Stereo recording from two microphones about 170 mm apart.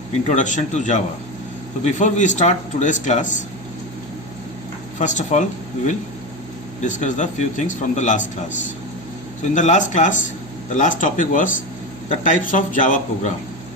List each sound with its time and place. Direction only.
0.3 s speech: 45° left (ahead or behind)
4.9 s speech: 45° left (ahead or behind)
6.8 s speech: 45° left (ahead or behind)
9.4 s speech: 45° left (ahead or behind)